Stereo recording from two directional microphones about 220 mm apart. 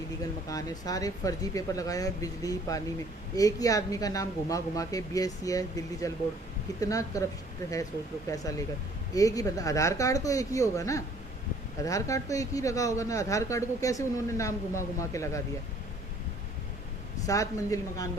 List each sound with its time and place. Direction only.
0.4 s speech: 15° left (ahead or behind)
17.2 s speech: 15° left (ahead or behind)